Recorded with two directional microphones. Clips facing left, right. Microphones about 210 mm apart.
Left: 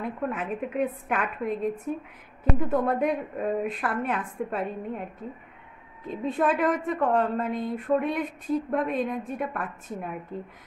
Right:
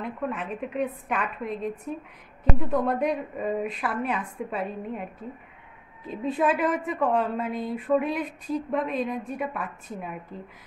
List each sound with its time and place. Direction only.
0.0 s a woman's voice: 5° left (ahead or behind)
6.0 s a woman's voice: centre (ahead or behind)